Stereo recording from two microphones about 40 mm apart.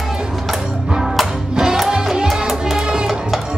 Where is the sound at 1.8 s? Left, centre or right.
Centre.